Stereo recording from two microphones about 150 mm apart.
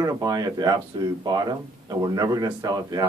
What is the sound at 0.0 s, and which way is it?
Speech, 25° right (ahead or behind).